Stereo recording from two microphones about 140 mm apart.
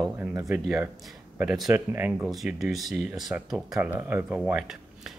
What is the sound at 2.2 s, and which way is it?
Speech, centre (ahead or behind).